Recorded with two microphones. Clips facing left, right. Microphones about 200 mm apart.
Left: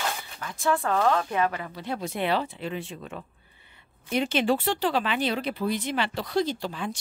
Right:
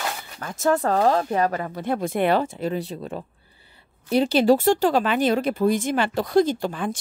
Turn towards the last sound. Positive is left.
turn(degrees=-50)  # may be behind; listen again after turning